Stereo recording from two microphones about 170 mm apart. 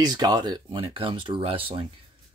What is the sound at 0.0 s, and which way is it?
Speech, 25° right (ahead or behind).